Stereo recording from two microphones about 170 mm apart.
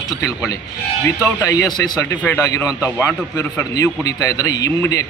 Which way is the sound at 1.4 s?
20° left (ahead or behind).